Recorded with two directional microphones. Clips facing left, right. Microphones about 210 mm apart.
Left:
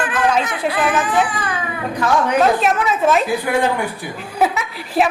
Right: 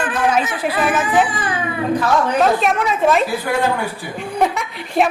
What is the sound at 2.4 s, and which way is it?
Speech, centre (ahead or behind).